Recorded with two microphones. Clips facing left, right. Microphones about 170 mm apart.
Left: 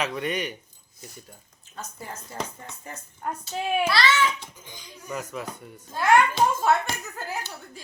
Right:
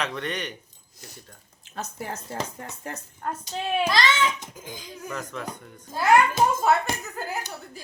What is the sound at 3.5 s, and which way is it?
Speech, 5° left (ahead or behind).